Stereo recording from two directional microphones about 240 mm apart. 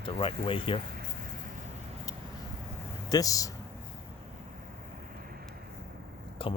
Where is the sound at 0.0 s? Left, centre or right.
Left.